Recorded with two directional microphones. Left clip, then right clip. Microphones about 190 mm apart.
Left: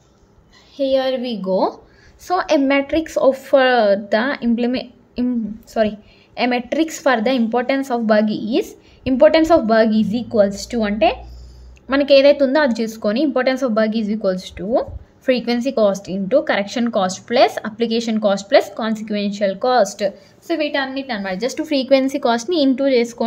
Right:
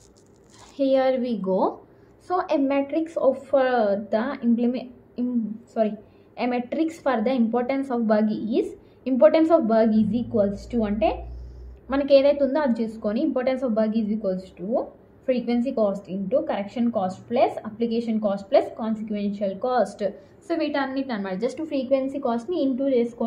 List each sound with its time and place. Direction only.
0.7 s a woman's voice: 15° left (ahead or behind); by 23.2 s 35° left (ahead or behind)